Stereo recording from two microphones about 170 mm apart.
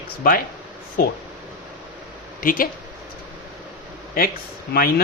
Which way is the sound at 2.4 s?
55° left (ahead or behind).